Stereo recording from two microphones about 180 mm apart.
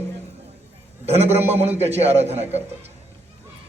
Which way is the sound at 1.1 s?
35° right (ahead or behind).